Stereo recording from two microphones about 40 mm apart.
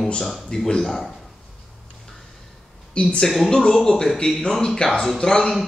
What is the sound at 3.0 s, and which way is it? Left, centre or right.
Speech, left.